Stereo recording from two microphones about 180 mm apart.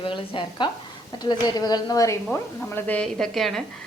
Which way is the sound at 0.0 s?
30° left (ahead or behind).